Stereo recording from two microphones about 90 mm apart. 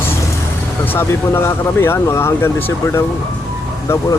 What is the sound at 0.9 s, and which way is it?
Speech, 30° left (ahead or behind).